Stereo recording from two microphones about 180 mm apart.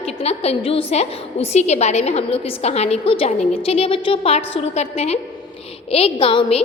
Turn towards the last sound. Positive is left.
turn(degrees=30)  # may be behind; listen again after turning